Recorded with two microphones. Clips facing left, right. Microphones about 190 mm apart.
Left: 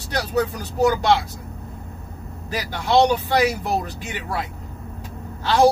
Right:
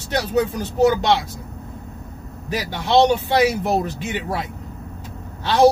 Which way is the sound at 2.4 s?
20° right (ahead or behind).